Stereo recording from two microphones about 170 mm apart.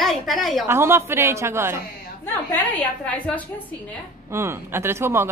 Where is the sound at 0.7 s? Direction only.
15° right (ahead or behind).